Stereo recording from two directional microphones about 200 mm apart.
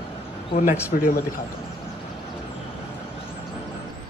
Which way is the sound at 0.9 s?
45° left (ahead or behind).